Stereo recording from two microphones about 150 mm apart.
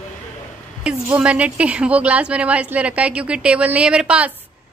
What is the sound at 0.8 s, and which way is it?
A woman's voice, 10° right (ahead or behind).